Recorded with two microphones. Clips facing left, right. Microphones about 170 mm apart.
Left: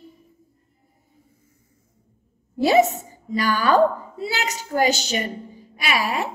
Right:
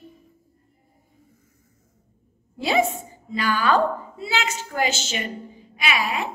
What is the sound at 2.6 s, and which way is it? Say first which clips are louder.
A woman's voice: left 5 dB; 40° left (ahead or behind).